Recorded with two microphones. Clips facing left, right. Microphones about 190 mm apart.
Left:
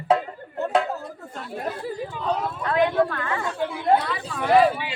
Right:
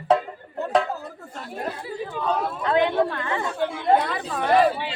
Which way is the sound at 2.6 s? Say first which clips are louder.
Even; 25° right (ahead or behind).